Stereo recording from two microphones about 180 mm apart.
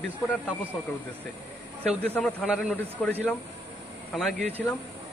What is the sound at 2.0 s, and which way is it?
A man's voice, 5° left (ahead or behind).